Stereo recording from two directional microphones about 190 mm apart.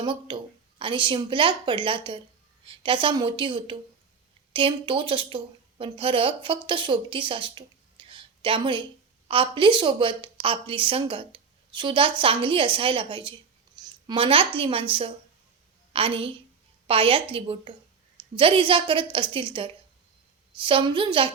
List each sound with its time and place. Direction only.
0.0 s a woman's voice: 25° right (ahead or behind)